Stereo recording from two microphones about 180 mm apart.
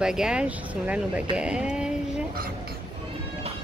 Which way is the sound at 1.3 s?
5° right (ahead or behind).